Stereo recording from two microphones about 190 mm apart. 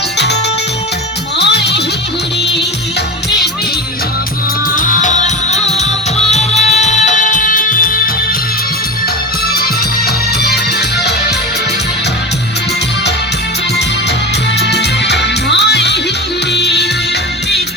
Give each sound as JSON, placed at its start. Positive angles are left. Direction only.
{"t": 1.4, "sound": "music", "side_deg": 60}
{"t": 4.7, "sound": "music", "side_deg": 40}
{"t": 10.5, "sound": "music", "side_deg": 60}
{"t": 14.6, "sound": "music", "side_deg": 60}